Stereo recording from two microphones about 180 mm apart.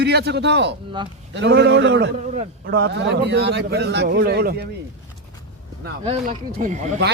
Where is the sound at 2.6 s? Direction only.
60° right (ahead or behind).